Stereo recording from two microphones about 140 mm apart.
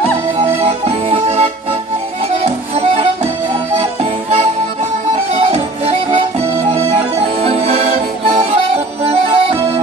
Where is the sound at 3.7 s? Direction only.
50° right (ahead or behind).